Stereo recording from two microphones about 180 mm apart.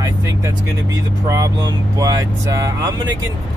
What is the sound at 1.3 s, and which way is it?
Speech, 20° right (ahead or behind).